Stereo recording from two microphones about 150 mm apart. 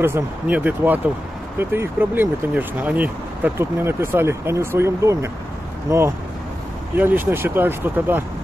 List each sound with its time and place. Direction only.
0.0 s speech: 15° right (ahead or behind)